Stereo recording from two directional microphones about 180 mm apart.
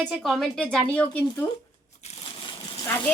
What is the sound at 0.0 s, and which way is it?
A woman's voice, centre (ahead or behind).